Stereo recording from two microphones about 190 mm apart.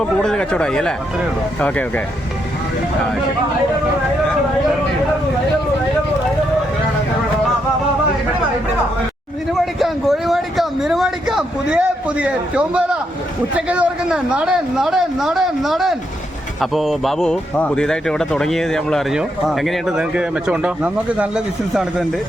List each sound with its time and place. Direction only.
0.0 s speech: 5° left (ahead or behind)
9.5 s a man's voice: centre (ahead or behind)